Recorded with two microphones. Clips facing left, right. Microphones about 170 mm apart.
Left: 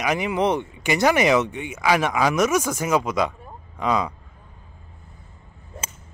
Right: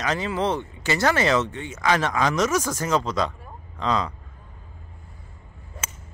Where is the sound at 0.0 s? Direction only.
15° left (ahead or behind).